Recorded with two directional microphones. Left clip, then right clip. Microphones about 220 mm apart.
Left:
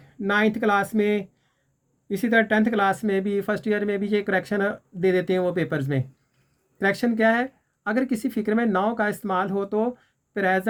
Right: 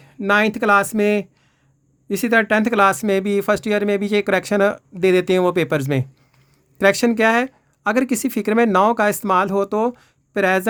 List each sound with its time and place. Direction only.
0.3 s speech: 50° right (ahead or behind)